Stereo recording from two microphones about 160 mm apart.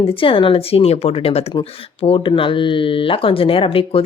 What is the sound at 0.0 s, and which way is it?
Speech, 35° left (ahead or behind).